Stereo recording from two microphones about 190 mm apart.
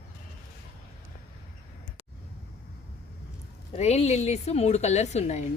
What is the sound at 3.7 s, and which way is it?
A woman's voice, 35° left (ahead or behind).